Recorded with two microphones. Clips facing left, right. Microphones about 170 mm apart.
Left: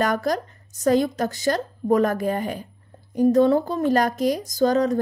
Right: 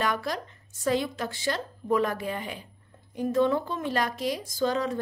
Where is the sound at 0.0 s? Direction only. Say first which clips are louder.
Left 7 dB; 45° left (ahead or behind).